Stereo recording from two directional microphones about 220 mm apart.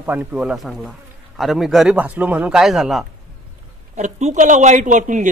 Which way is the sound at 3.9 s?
30° right (ahead or behind).